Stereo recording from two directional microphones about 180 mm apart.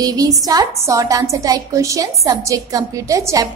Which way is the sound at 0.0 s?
20° right (ahead or behind).